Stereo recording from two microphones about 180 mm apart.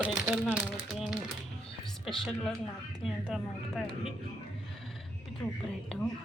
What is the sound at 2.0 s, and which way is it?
Speech, centre (ahead or behind).